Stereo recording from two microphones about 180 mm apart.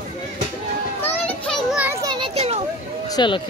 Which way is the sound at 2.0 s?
25° right (ahead or behind).